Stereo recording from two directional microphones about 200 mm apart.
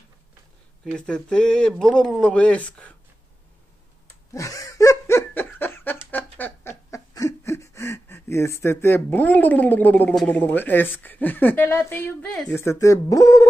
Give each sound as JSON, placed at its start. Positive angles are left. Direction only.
{"t": 0.9, "sound": "speech", "side_deg": 5}
{"t": 4.3, "sound": "laughter", "side_deg": 15}
{"t": 6.1, "sound": "snicker", "side_deg": 10}